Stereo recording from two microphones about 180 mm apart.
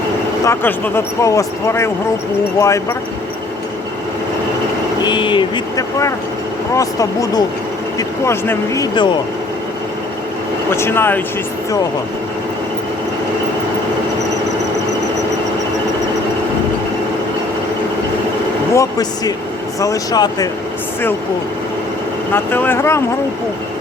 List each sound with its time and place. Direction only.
0.4 s speech: 15° left (ahead or behind)
5.0 s speech: 25° left (ahead or behind)
10.8 s speech: 15° left (ahead or behind)
18.7 s speech: 20° left (ahead or behind)
22.3 s speech: 10° left (ahead or behind)